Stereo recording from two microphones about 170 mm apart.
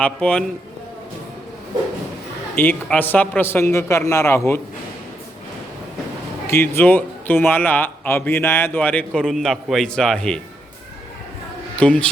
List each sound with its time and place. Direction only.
0.0 s speech: 5° left (ahead or behind)
2.6 s speech: 10° left (ahead or behind)
6.5 s speech: 15° left (ahead or behind)
11.8 s speech: 5° left (ahead or behind)